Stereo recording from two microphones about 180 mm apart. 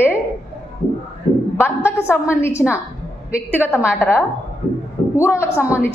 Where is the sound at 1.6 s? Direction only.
10° left (ahead or behind); by 4.0 s 5° right (ahead or behind).